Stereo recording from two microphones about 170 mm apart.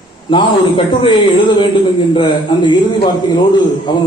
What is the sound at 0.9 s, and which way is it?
A man's voice, 30° left (ahead or behind).